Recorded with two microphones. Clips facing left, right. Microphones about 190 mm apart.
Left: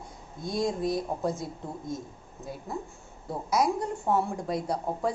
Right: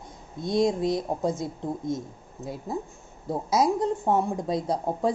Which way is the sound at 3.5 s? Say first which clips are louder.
Right 3 dB; 25° right (ahead or behind).